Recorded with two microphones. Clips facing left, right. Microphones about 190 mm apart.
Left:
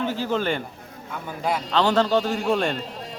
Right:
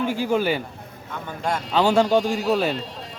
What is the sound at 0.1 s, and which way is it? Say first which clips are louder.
Speech: right 3 dB; 10° right (ahead or behind).